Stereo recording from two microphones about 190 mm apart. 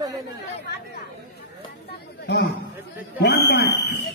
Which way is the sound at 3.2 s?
65° left (ahead or behind).